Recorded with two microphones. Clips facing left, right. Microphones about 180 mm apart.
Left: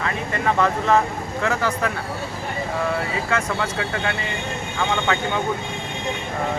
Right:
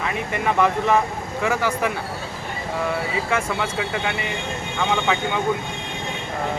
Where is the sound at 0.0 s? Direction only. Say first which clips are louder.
Even; 15° right (ahead or behind).